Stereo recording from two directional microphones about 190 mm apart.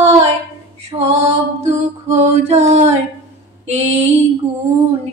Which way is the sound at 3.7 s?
35° right (ahead or behind).